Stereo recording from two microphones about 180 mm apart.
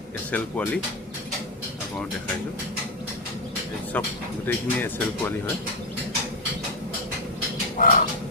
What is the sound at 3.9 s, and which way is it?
Speech, 10° left (ahead or behind).